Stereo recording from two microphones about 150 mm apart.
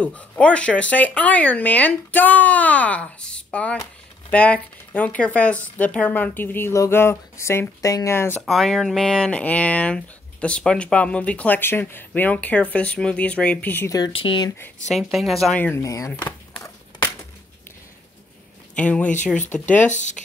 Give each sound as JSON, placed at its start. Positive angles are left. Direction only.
{"t": 0.0, "sound": "speech", "side_deg": 10}
{"t": 8.4, "sound": "speech", "side_deg": 0}
{"t": 13.9, "sound": "speech", "side_deg": 30}
{"t": 14.9, "sound": "a woman's voice", "side_deg": 0}
{"t": 15.6, "sound": "speech", "side_deg": 20}
{"t": 16.2, "sound": "a sound", "side_deg": 10}
{"t": 18.8, "sound": "speech", "side_deg": 10}
{"t": 19.9, "sound": "speech", "side_deg": 50}